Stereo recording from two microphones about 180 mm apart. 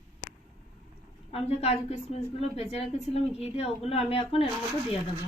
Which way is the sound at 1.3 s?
35° left (ahead or behind).